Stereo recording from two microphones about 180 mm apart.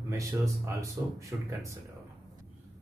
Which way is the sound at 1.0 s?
20° right (ahead or behind).